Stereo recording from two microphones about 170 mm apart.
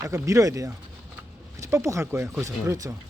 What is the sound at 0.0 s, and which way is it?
Speech, 20° right (ahead or behind).